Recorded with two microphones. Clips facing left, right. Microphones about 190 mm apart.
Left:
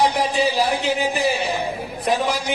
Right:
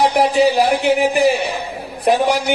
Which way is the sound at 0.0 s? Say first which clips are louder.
Right 5 dB; 70° right (ahead or behind).